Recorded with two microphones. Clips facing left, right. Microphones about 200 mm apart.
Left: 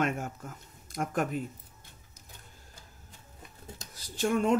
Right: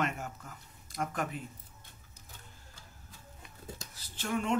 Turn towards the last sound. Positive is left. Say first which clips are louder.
# left 6 dB
turn(degrees=45)  # may be behind; listen again after turning